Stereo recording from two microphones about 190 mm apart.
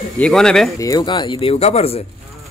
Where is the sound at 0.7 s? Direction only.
20° left (ahead or behind); by 1.9 s 35° left (ahead or behind).